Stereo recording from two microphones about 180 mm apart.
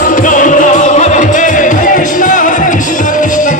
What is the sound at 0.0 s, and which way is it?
Music, 45° left (ahead or behind).